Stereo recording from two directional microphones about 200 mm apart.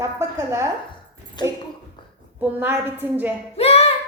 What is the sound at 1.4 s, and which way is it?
Speech, 20° left (ahead or behind).